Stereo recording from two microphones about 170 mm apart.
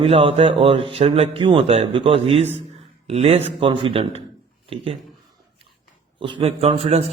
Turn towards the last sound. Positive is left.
turn(degrees=-35)  # may be behind; listen again after turning